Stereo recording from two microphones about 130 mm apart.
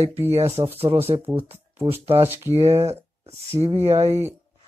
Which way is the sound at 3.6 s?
40° right (ahead or behind).